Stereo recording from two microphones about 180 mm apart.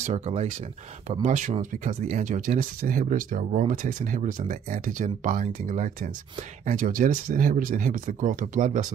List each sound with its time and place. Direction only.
0.0 s speech: 40° right (ahead or behind)